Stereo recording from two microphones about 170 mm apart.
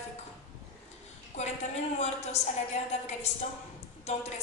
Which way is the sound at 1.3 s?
40° left (ahead or behind).